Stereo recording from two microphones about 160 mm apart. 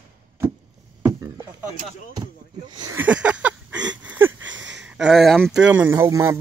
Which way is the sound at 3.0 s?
10° right (ahead or behind).